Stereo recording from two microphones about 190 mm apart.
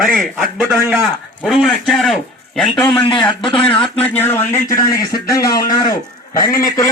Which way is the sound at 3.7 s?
5° left (ahead or behind).